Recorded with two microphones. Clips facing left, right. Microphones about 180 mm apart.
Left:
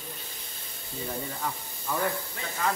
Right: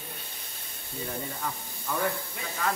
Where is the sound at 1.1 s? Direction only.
5° left (ahead or behind).